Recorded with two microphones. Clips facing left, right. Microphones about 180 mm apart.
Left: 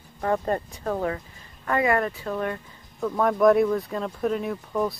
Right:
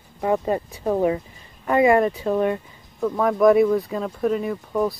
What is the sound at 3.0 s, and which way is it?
Speech, centre (ahead or behind).